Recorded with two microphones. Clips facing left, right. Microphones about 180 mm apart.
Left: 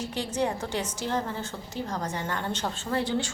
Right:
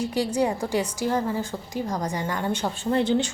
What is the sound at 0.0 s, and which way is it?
Speech, 10° right (ahead or behind).